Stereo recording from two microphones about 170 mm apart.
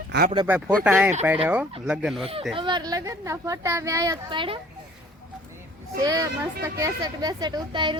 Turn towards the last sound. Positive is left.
turn(degrees=-25)  # may be behind; listen again after turning